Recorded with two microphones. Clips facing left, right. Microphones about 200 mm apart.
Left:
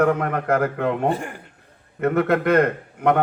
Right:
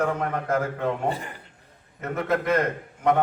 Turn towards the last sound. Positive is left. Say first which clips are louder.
# left 3 dB
turn(degrees=60)  # may be behind; listen again after turning